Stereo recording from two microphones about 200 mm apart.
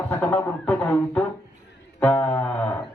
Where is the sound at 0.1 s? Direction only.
10° left (ahead or behind).